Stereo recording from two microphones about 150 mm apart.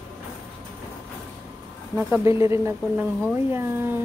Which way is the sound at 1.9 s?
15° right (ahead or behind).